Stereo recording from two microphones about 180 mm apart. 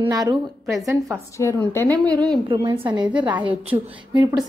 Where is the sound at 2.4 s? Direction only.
25° right (ahead or behind).